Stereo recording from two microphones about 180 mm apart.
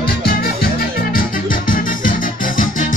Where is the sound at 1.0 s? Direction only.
50° left (ahead or behind).